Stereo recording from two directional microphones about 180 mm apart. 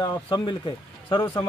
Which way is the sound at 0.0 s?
25° left (ahead or behind).